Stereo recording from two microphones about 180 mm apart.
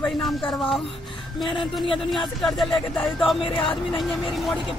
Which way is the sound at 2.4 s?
Centre (ahead or behind).